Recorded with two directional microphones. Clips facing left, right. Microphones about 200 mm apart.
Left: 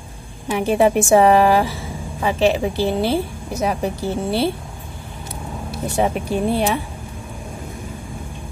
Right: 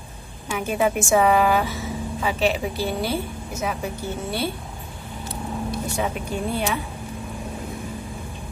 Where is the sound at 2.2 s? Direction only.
30° left (ahead or behind).